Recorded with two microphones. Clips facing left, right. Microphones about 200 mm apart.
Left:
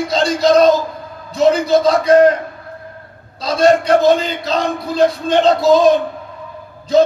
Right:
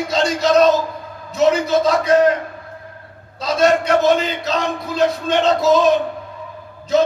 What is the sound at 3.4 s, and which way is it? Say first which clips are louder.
A man's voice: left 3 dB; 35° left (ahead or behind).